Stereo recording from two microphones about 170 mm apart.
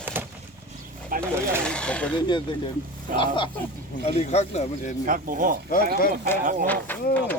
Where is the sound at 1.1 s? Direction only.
55° right (ahead or behind).